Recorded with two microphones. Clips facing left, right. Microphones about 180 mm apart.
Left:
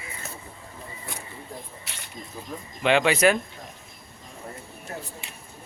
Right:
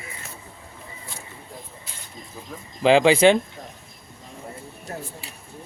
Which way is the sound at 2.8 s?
30° right (ahead or behind).